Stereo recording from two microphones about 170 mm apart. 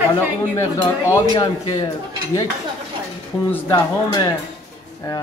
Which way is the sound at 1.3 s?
25° left (ahead or behind).